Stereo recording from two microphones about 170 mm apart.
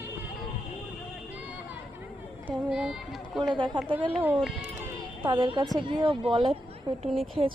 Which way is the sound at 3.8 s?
30° right (ahead or behind).